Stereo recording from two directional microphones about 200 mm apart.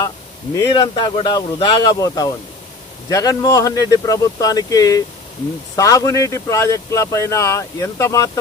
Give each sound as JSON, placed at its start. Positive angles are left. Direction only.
{"t": 0.6, "sound": "speech", "side_deg": 20}